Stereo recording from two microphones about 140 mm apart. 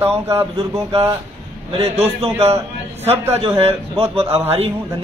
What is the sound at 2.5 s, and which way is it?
Speech, 15° right (ahead or behind).